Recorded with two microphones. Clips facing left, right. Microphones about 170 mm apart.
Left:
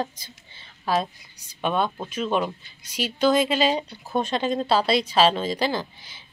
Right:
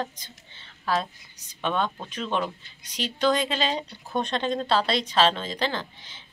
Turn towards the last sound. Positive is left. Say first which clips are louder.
# left 4 dB
turn(degrees=10)  # may be behind; listen again after turning